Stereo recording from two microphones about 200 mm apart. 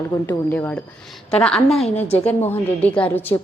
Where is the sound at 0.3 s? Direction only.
10° left (ahead or behind).